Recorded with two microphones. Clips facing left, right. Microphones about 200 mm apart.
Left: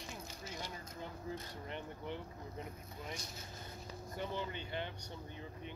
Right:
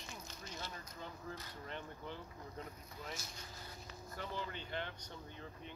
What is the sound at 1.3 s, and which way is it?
Speech, 15° left (ahead or behind).